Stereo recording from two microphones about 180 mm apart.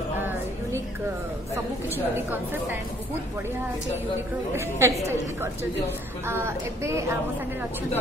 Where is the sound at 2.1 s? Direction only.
10° right (ahead or behind).